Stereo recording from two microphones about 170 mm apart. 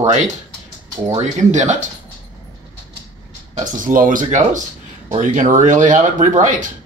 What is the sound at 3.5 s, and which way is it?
Speech, 50° right (ahead or behind).